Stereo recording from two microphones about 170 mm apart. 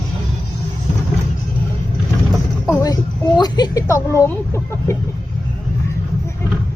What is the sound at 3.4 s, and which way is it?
Speech, 25° left (ahead or behind).